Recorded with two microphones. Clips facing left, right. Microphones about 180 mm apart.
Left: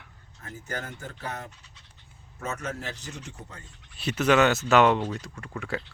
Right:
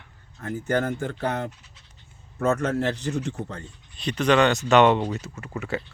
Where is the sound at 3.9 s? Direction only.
5° left (ahead or behind).